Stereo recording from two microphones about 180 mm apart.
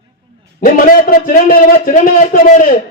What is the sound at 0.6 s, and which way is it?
A man's voice, 50° left (ahead or behind).